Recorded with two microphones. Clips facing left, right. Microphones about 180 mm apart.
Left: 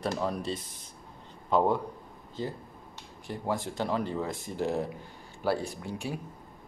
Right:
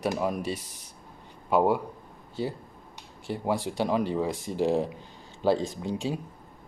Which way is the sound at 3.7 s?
15° right (ahead or behind).